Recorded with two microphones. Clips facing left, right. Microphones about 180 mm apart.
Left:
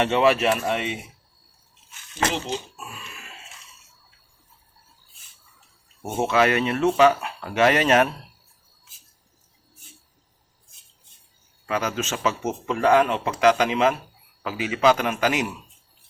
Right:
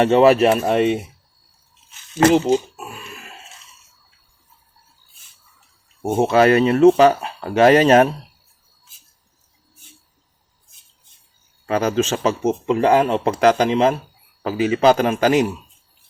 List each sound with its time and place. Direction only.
0.0 s speech: 40° right (ahead or behind)
2.2 s speech: 45° right (ahead or behind)
6.1 s speech: 35° right (ahead or behind)
11.6 s speech: 35° right (ahead or behind)